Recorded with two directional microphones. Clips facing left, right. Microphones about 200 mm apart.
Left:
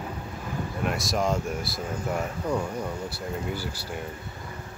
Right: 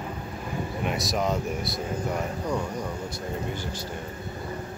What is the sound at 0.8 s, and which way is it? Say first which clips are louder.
Speech: left 1 dB; centre (ahead or behind).